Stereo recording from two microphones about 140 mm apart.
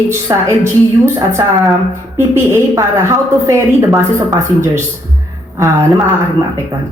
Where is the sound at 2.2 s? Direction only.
20° right (ahead or behind).